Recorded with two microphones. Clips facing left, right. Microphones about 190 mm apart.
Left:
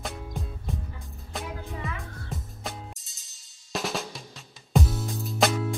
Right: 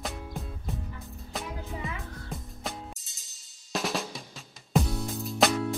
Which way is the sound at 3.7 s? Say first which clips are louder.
Even; centre (ahead or behind).